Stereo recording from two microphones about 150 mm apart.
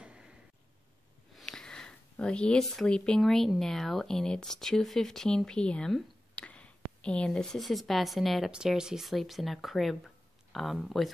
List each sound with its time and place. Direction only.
1.3 s speech: 5° left (ahead or behind)